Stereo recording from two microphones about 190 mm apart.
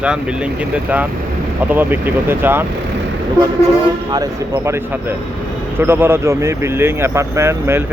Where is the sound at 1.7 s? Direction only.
10° right (ahead or behind).